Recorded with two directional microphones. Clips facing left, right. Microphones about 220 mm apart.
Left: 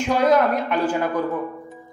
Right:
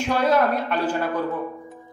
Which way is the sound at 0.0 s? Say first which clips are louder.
Left 2 dB; 10° left (ahead or behind).